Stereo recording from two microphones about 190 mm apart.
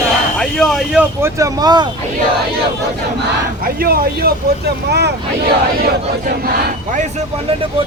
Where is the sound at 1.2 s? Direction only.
15° right (ahead or behind).